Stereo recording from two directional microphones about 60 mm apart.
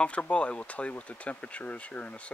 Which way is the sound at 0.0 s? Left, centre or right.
Centre.